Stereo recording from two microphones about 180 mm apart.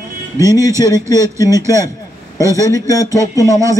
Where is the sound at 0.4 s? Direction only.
15° right (ahead or behind).